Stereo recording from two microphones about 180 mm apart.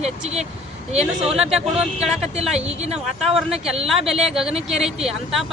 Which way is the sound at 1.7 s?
5° right (ahead or behind).